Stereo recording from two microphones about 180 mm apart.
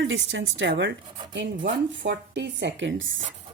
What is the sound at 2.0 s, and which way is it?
A woman's voice, 75° right (ahead or behind).